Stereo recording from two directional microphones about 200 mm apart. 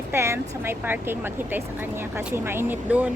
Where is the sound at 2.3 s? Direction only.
10° right (ahead or behind).